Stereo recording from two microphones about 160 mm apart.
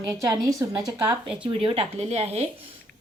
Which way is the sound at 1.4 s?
35° right (ahead or behind).